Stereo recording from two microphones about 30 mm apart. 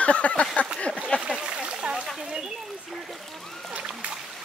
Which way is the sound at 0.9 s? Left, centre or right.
Left.